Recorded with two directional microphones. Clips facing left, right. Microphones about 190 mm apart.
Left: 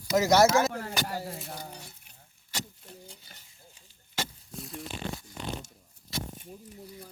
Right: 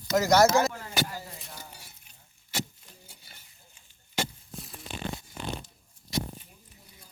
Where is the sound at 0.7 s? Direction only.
60° left (ahead or behind).